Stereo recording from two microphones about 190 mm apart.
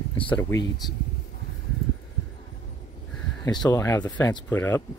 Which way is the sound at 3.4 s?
20° left (ahead or behind).